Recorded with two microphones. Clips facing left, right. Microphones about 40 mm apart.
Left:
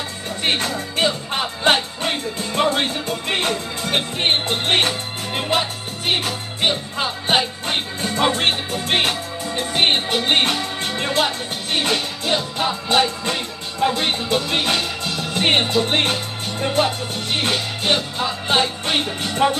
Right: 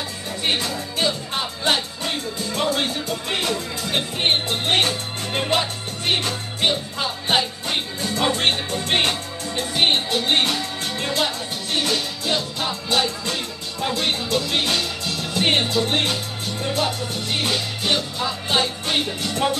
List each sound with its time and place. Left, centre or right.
0.4 s music: left
4.2 s music: left
5.3 s speech: centre
5.6 s music: centre
7.6 s music: left
8.4 s music: centre
9.8 s music: left